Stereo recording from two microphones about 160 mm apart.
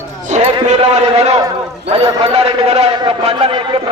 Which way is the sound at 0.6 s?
45° right (ahead or behind).